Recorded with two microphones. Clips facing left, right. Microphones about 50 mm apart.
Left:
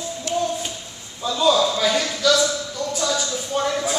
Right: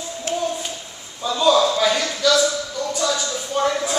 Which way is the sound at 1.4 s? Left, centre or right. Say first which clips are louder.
Right 2 dB; centre.